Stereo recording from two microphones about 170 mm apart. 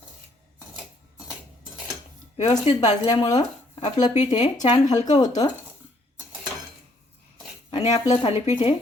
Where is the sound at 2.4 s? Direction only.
35° left (ahead or behind).